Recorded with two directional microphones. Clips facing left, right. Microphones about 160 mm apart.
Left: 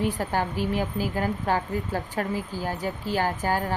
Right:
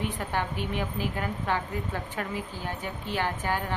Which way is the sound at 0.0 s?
35° left (ahead or behind).